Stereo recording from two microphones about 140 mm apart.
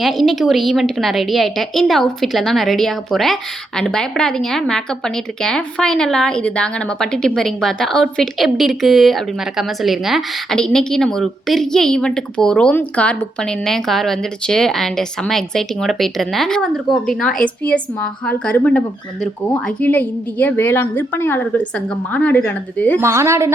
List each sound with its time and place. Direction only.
0.0 s a woman's voice: centre (ahead or behind)
23.0 s a woman's voice: 20° right (ahead or behind)